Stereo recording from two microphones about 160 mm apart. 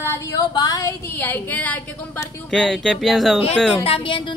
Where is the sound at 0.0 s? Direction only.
15° left (ahead or behind).